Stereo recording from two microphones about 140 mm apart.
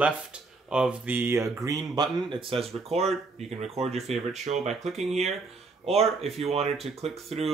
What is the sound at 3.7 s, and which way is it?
Speech, 50° right (ahead or behind).